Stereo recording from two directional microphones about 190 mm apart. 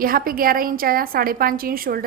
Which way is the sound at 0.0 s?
50° right (ahead or behind).